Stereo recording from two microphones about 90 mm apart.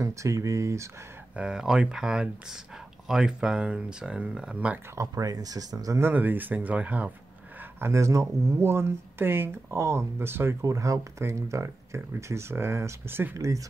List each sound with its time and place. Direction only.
0.0 s speech: 35° right (ahead or behind)
1.3 s speech: 10° right (ahead or behind)
4.9 s speech: 40° right (ahead or behind)
5.9 s speech: 20° right (ahead or behind)
7.8 s speech: 35° right (ahead or behind)
10.6 s speech: 35° right (ahead or behind)